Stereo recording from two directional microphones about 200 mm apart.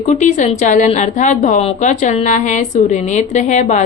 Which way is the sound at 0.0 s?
35° left (ahead or behind).